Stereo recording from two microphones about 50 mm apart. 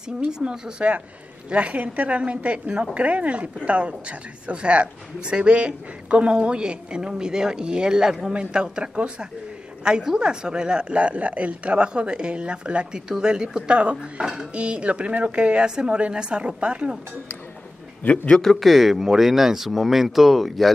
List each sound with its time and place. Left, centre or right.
0.2 s a woman's voice: centre
18.0 s a man's voice: left
18.4 s speech: centre